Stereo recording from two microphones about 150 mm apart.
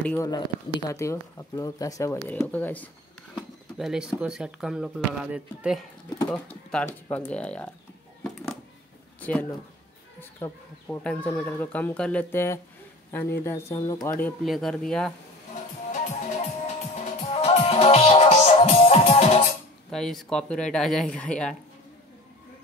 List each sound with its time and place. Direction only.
0.2 s speech: 25° left (ahead or behind)
3.3 s speech: centre (ahead or behind)
6.3 s speech: 5° left (ahead or behind)
9.2 s speech: 10° left (ahead or behind)
11.1 s speech: 10° left (ahead or behind); by 14.1 s 25° left (ahead or behind)
14.4 s speech: centre (ahead or behind)
15.9 s music: 50° left (ahead or behind)
19.9 s speech: centre (ahead or behind)